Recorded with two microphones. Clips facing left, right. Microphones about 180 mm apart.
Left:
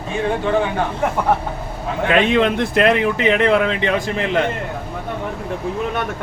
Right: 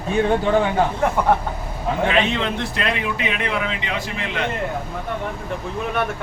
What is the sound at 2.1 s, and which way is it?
A man's voice, 55° left (ahead or behind).